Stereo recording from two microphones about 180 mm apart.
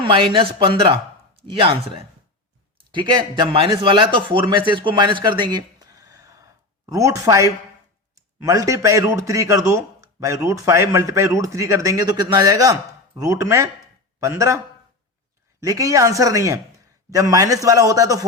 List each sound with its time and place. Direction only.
0.0 s a man's voice: 30° right (ahead or behind)
15.6 s a man's voice: 20° right (ahead or behind)